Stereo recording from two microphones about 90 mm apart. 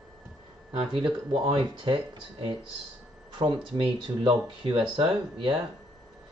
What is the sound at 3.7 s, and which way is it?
Speech, 75° right (ahead or behind).